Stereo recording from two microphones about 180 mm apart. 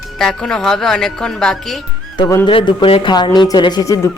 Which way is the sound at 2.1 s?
25° left (ahead or behind).